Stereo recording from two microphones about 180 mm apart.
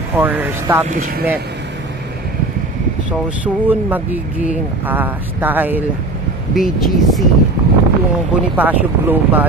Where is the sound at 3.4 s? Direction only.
10° right (ahead or behind).